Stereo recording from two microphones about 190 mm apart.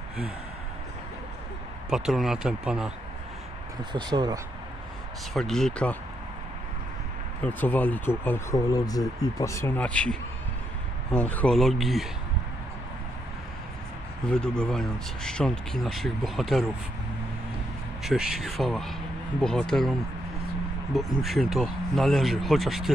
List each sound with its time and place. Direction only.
1.9 s speech: 5° right (ahead or behind)
3.9 s speech: 25° right (ahead or behind)
5.3 s speech: centre (ahead or behind)
7.4 s speech: 10° left (ahead or behind)
14.3 s speech: 5° left (ahead or behind)
18.0 s speech: 5° right (ahead or behind)
21.2 s speech: centre (ahead or behind)